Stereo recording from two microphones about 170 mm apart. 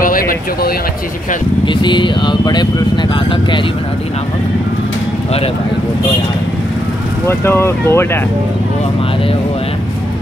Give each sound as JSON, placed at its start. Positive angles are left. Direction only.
{"t": 0.0, "sound": "a sound", "side_deg": 55}
{"t": 1.7, "sound": "speech", "side_deg": 30}
{"t": 7.2, "sound": "speech", "side_deg": 15}